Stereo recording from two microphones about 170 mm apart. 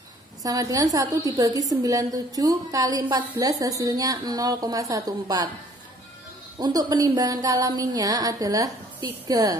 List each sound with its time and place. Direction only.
0.4 s a woman's voice: 20° right (ahead or behind)
6.6 s a woman's voice: 25° right (ahead or behind)